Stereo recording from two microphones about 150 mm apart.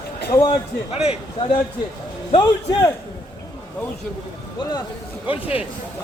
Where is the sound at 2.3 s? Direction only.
30° left (ahead or behind).